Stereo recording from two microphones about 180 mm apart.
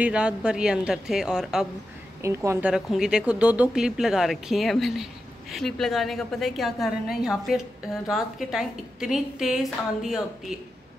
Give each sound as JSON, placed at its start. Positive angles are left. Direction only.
{"t": 0.0, "sound": "a woman's voice", "side_deg": -5}
{"t": 2.2, "sound": "a woman's voice", "side_deg": -15}
{"t": 2.7, "sound": "a woman's voice", "side_deg": -5}